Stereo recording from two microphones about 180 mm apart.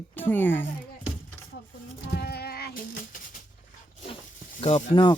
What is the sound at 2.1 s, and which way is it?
Music, 65° left (ahead or behind).